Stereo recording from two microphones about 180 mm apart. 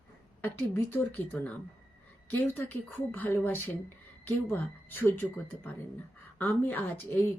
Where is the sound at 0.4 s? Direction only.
10° left (ahead or behind).